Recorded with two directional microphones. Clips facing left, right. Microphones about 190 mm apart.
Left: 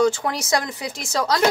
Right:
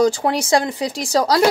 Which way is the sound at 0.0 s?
35° right (ahead or behind).